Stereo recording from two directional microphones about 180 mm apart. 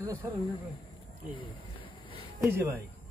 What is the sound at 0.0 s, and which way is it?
Speech, 15° right (ahead or behind).